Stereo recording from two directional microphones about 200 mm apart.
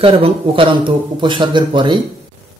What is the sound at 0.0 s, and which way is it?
A man's voice, 25° right (ahead or behind).